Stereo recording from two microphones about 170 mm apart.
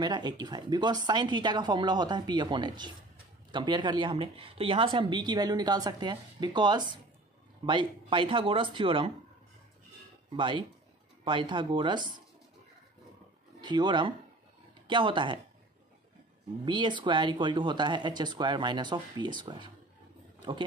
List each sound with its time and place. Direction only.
0.0 s speech: 25° right (ahead or behind)
10.3 s speech: 30° right (ahead or behind)
13.6 s speech: 25° right (ahead or behind)
16.6 s speech: 25° right (ahead or behind)